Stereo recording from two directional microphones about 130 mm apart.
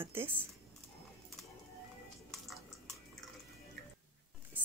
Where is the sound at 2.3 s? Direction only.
Centre (ahead or behind).